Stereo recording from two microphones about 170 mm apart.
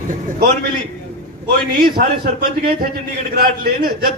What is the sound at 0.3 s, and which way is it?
Speech, 65° right (ahead or behind).